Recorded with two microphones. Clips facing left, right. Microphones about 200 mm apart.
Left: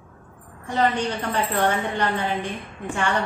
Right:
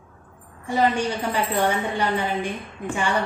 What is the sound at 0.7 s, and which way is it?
A woman's voice, 10° right (ahead or behind).